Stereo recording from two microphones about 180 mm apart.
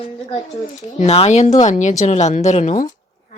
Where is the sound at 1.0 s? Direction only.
35° left (ahead or behind).